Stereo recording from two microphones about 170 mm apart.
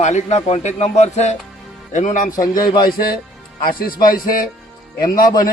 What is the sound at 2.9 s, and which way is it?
Music, 60° left (ahead or behind).